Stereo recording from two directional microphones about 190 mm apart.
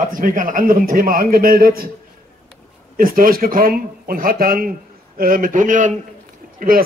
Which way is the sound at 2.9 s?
50° right (ahead or behind).